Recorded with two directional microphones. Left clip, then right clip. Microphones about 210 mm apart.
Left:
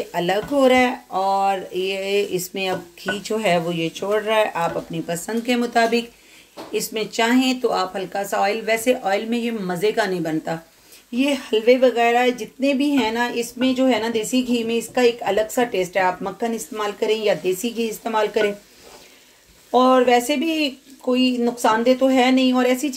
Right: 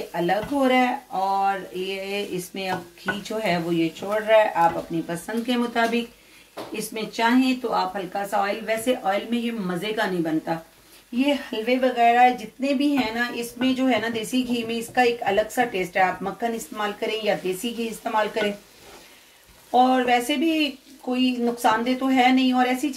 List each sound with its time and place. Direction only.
0.1 s speech: 50° left (ahead or behind)
19.7 s speech: 45° left (ahead or behind)